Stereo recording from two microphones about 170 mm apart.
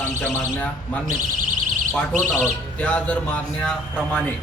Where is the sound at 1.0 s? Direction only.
50° right (ahead or behind).